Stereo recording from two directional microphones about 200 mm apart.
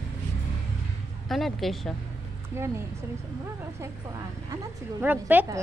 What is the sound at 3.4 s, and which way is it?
Speech, 15° right (ahead or behind).